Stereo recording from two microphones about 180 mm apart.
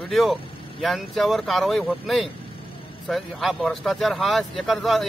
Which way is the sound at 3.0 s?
Centre (ahead or behind).